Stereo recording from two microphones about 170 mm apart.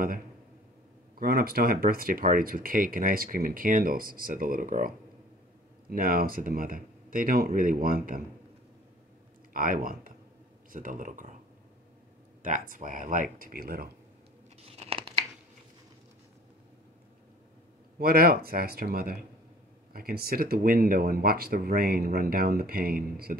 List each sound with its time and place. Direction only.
1.2 s speech: 60° right (ahead or behind)
9.5 s speech: 55° right (ahead or behind)
12.4 s speech: 50° right (ahead or behind)
14.7 s tearing: 35° right (ahead or behind)
17.9 s speech: 60° right (ahead or behind)